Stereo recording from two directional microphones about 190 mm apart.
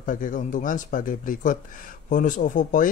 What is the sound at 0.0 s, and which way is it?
Speech, 45° left (ahead or behind).